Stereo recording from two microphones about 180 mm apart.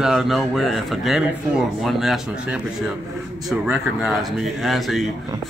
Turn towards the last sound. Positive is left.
turn(degrees=0)  # may be behind; listen again after turning